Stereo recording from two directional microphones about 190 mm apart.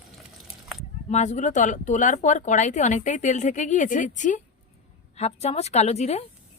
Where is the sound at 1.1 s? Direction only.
40° left (ahead or behind).